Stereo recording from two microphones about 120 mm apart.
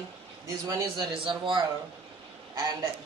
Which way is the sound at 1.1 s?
45° right (ahead or behind).